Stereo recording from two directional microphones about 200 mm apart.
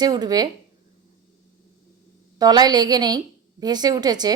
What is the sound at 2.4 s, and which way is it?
Speech, 20° right (ahead or behind).